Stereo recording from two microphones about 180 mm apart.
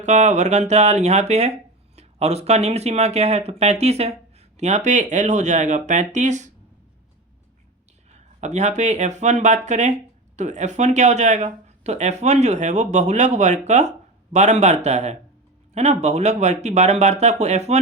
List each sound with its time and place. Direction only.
0.0 s speech: 40° right (ahead or behind)
8.4 s speech: 40° right (ahead or behind)